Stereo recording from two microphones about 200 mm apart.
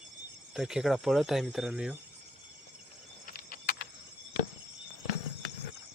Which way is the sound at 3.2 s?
45° left (ahead or behind).